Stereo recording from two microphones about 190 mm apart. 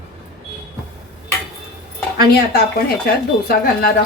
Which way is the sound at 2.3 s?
55° left (ahead or behind).